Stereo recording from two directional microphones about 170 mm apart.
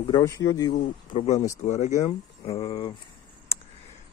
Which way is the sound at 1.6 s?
45° left (ahead or behind).